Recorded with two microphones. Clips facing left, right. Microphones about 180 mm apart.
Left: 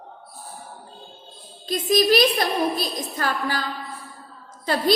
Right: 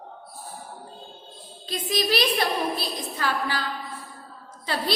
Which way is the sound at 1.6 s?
45° left (ahead or behind).